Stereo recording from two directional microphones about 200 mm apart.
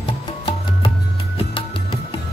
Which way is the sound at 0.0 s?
25° left (ahead or behind).